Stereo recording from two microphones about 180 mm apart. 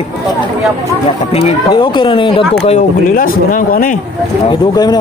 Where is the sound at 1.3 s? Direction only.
30° left (ahead or behind).